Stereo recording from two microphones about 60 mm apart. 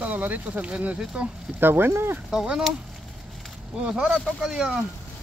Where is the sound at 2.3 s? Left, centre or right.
Centre.